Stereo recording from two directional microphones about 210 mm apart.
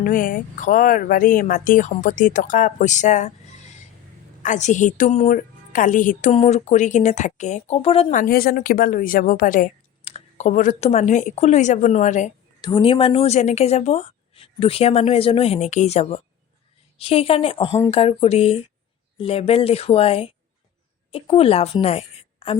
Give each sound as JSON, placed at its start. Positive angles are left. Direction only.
{"t": 0.0, "sound": "a woman's voice", "side_deg": 40}
{"t": 4.4, "sound": "a woman's voice", "side_deg": 35}
{"t": 8.2, "sound": "a woman's voice", "side_deg": 45}
{"t": 12.6, "sound": "a woman's voice", "side_deg": 25}